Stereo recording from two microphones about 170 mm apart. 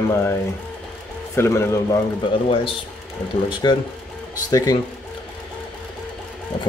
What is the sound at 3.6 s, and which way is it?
Speech, 25° left (ahead or behind).